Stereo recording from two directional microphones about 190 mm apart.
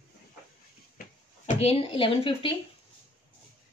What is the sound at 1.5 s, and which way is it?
Speech, 30° left (ahead or behind).